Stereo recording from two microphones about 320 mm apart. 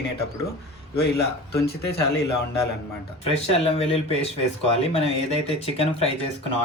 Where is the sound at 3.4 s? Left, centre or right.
Centre.